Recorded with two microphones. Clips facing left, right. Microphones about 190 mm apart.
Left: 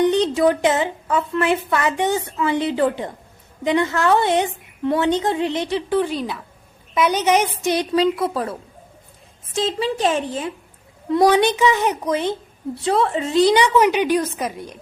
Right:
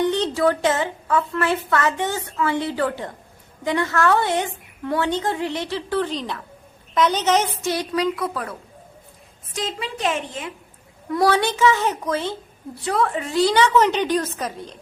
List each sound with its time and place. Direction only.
0.0 s a child's voice: 15° left (ahead or behind)
11.1 s a child's voice: 20° left (ahead or behind)